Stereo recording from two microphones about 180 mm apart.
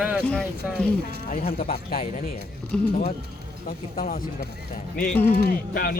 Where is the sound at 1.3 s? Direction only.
50° left (ahead or behind).